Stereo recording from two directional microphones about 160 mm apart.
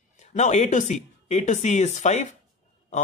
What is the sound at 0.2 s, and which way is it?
Speech, 50° left (ahead or behind).